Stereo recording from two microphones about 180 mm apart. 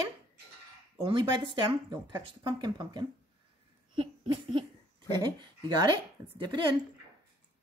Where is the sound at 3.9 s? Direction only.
25° right (ahead or behind).